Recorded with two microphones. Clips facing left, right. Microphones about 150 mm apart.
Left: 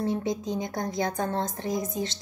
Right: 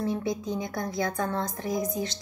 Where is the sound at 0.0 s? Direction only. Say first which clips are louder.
Left 1 dB; 20° left (ahead or behind).